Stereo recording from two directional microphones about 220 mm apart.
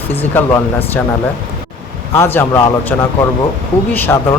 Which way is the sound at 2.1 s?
10° left (ahead or behind).